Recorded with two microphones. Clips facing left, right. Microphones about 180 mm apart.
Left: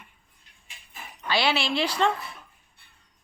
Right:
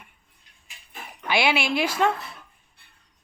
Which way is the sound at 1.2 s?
15° right (ahead or behind).